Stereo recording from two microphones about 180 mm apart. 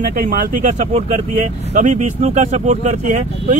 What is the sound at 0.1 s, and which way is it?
Speech, 50° right (ahead or behind).